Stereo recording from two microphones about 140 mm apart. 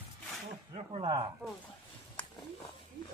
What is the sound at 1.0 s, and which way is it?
Speech, 30° right (ahead or behind).